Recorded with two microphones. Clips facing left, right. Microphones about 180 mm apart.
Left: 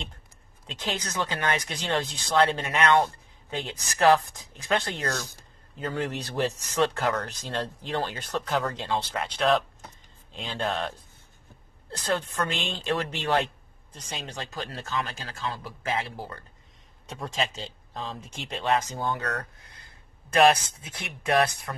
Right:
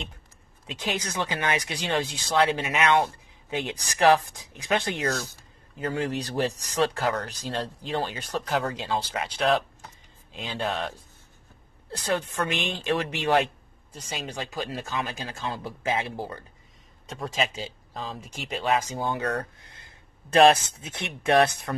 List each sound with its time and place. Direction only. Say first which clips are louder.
0.7 s speech: right 2 dB; 10° right (ahead or behind)
11.9 s speech: right 1 dB; 10° right (ahead or behind)
17.0 s speech: right 2 dB; centre (ahead or behind); by 21.7 s 25° right (ahead or behind)